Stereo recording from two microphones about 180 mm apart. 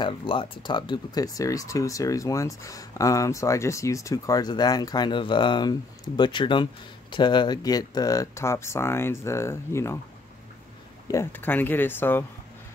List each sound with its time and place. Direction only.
0.0 s speech: 25° left (ahead or behind)
11.1 s speech: 15° left (ahead or behind)